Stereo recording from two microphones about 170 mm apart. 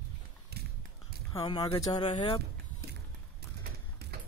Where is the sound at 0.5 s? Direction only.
70° right (ahead or behind).